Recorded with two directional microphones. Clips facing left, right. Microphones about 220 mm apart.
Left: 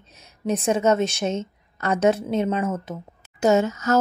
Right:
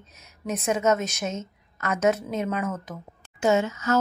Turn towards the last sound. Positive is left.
turn(degrees=40)  # may be behind; listen again after turning